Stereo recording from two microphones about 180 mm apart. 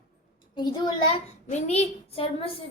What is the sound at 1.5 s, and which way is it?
A woman's voice, 35° left (ahead or behind).